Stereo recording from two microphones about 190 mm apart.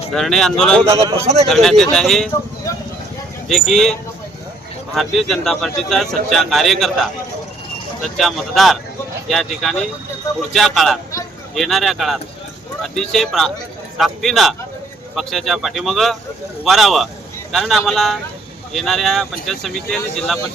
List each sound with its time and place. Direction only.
0.1 s speech: centre (ahead or behind)
0.9 s speech: 20° right (ahead or behind)
1.5 s speech: centre (ahead or behind)
3.5 s speech: centre (ahead or behind)
4.9 s speech: centre (ahead or behind)
8.0 s speech: centre (ahead or behind)